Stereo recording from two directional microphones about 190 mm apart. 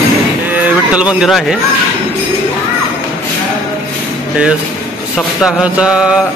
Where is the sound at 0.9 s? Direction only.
5° right (ahead or behind).